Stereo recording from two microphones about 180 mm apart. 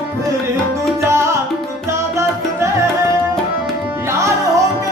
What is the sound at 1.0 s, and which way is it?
Tabla, 15° right (ahead or behind).